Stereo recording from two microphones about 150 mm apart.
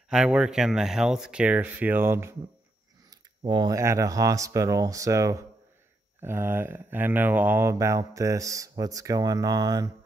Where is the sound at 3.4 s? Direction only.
30° right (ahead or behind).